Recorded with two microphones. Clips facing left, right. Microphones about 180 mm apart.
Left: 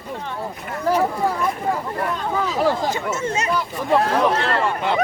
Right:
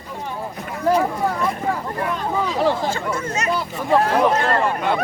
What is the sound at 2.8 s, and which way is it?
Speech, 20° left (ahead or behind).